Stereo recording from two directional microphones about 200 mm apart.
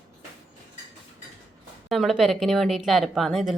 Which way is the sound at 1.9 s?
Centre (ahead or behind).